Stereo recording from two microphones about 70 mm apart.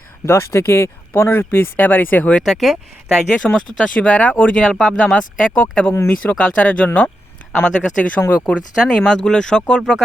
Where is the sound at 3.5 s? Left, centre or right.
Centre.